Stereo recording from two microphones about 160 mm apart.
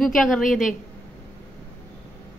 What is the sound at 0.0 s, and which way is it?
Speech, centre (ahead or behind).